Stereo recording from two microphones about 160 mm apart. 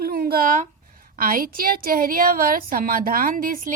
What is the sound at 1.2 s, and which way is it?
A woman's voice, 60° right (ahead or behind).